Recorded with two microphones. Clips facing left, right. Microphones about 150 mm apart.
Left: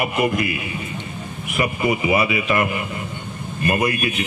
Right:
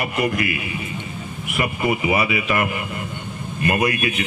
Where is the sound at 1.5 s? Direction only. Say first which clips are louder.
Left 1 dB; centre (ahead or behind).